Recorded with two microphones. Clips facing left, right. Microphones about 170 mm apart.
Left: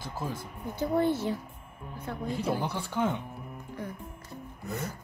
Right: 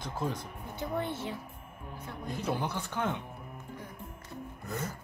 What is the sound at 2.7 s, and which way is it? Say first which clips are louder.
Speech: left 4 dB; 10° left (ahead or behind).